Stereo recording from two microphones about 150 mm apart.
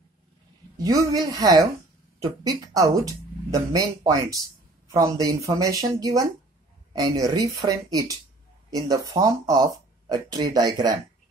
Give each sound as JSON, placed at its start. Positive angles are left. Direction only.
{"t": 0.8, "sound": "speech", "side_deg": -25}